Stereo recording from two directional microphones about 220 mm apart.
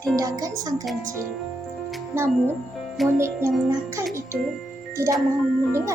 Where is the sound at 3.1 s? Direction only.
10° right (ahead or behind).